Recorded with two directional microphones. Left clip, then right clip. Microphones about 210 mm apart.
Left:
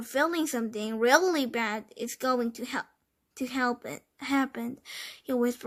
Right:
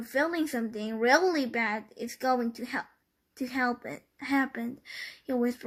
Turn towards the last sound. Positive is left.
turn(degrees=35)  # may be behind; listen again after turning